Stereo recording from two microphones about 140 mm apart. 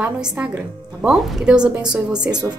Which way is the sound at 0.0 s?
5° right (ahead or behind).